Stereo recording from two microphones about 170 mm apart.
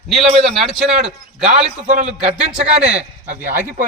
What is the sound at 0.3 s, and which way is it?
Speech, centre (ahead or behind).